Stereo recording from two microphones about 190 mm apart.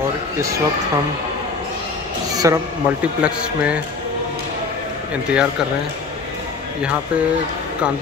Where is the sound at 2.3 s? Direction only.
20° right (ahead or behind).